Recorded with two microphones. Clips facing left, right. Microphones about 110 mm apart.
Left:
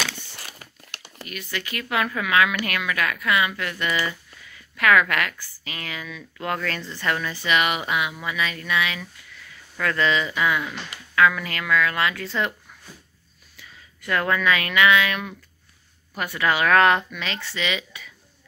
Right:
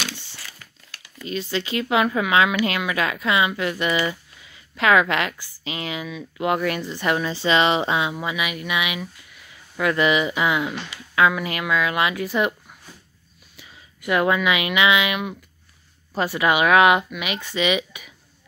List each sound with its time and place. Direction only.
1.2 s speech: 25° right (ahead or behind)